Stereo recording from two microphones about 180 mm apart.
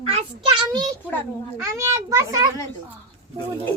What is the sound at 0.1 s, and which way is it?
A child's voice, 30° right (ahead or behind).